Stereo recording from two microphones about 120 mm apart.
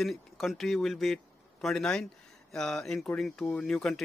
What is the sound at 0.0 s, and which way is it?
A man's voice, centre (ahead or behind).